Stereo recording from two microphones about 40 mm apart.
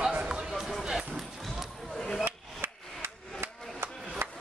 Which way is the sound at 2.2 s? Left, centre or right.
Right.